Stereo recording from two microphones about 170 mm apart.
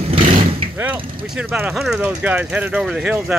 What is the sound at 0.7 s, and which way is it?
Speech, 10° right (ahead or behind).